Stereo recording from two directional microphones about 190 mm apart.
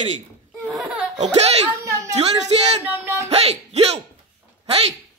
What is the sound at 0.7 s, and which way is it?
Laughter, 5° right (ahead or behind).